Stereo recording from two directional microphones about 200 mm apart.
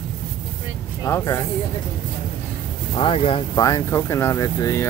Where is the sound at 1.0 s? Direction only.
15° left (ahead or behind).